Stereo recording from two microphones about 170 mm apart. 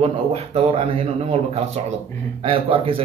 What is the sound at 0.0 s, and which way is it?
A man's voice, 35° right (ahead or behind).